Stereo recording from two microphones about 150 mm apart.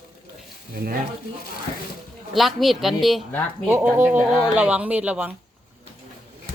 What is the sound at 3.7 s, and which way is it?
Speech, 10° right (ahead or behind).